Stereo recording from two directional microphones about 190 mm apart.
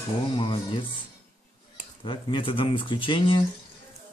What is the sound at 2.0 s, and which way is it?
Speech, 25° left (ahead or behind).